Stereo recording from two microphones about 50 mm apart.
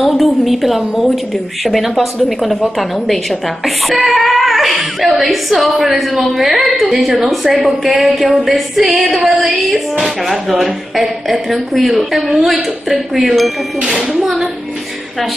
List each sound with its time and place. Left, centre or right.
0.0 s a woman's voice: centre
13.7 s speech: centre
14.2 s a woman's voice: centre